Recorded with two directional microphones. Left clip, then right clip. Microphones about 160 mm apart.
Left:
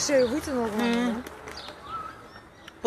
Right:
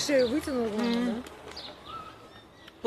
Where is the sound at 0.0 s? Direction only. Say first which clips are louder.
Left 2 dB; 35° right (ahead or behind).